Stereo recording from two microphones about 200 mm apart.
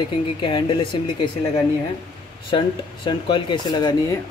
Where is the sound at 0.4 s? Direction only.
25° left (ahead or behind).